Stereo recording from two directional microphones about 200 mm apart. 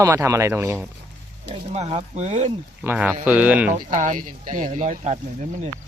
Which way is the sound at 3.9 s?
40° right (ahead or behind).